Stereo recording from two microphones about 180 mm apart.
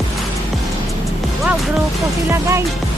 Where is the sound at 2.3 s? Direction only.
15° right (ahead or behind).